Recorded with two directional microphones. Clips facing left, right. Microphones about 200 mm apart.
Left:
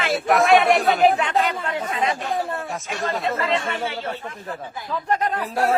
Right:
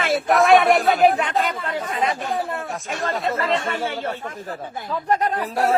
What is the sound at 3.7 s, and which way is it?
Speech, 50° right (ahead or behind).